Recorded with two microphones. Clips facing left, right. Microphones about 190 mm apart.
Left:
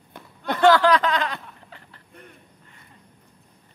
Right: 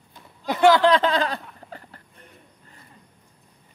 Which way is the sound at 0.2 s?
60° left (ahead or behind).